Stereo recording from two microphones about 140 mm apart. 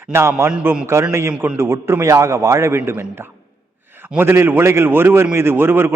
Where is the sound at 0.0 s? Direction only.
20° right (ahead or behind).